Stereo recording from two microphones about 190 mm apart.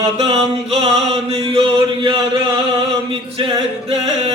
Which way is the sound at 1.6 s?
30° right (ahead or behind).